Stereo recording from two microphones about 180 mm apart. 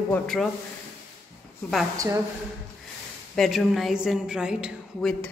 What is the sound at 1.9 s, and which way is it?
Speech, 20° right (ahead or behind).